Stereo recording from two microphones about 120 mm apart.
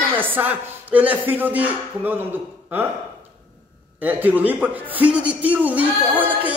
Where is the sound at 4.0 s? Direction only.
15° right (ahead or behind).